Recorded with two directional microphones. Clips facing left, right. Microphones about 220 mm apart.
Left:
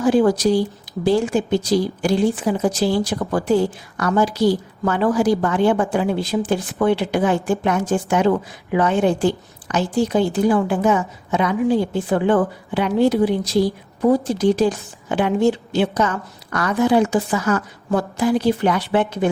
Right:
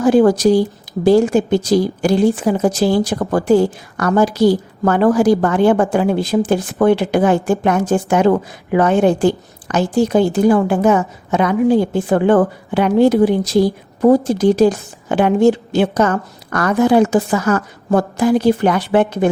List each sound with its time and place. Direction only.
0.0 s a woman's voice: 45° right (ahead or behind)